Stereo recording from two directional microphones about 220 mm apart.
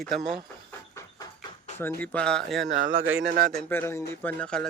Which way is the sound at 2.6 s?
55° right (ahead or behind).